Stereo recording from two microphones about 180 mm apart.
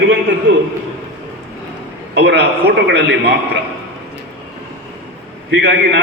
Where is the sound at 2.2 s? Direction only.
70° right (ahead or behind).